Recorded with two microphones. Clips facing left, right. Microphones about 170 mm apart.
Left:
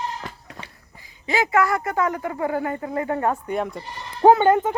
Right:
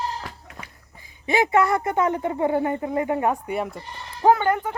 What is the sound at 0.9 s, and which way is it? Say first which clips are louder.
A woman's voice: right 2 dB; 20° right (ahead or behind).